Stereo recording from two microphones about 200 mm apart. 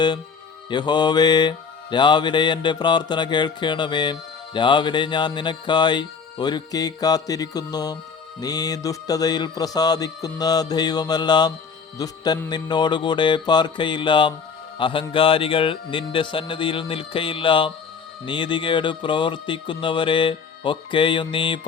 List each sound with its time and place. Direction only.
0.7 s mantra: 20° left (ahead or behind)